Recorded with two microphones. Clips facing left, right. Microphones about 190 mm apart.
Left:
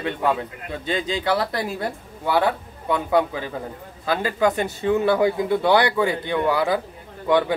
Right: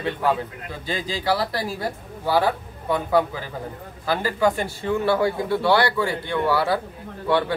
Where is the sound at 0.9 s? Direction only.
20° left (ahead or behind).